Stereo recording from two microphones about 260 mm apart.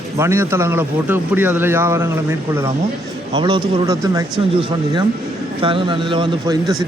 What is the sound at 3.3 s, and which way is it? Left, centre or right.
Speech, centre.